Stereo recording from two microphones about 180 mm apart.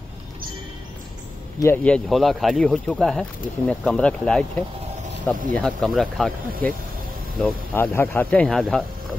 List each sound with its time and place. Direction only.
1.6 s speech: 10° left (ahead or behind)